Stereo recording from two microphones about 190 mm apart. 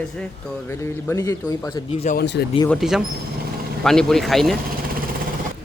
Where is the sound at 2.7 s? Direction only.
Centre (ahead or behind).